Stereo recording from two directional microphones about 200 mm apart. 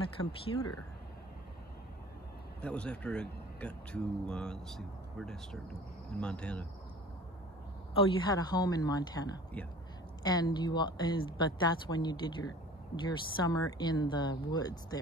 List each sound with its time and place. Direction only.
0.5 s speech: 90° left
2.6 s speech: 5° left (ahead or behind)
8.3 s speech: 20° left (ahead or behind)